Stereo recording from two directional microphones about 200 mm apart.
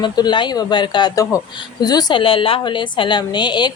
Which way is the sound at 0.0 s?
20° left (ahead or behind).